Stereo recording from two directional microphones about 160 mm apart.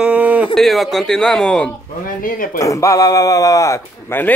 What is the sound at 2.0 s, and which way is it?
Speech, 60° left (ahead or behind).